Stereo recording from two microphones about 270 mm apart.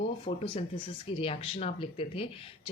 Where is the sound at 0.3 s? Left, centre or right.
Centre.